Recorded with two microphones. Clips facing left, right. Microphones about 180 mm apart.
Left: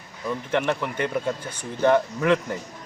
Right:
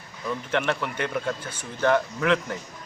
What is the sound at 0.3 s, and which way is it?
Speech, 10° left (ahead or behind).